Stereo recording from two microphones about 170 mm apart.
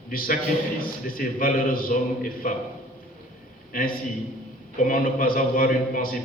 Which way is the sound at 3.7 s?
55° left (ahead or behind).